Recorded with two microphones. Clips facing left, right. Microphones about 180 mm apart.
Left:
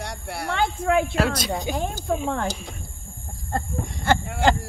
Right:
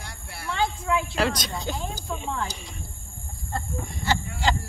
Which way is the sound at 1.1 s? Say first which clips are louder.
Left 3 dB; 5° left (ahead or behind).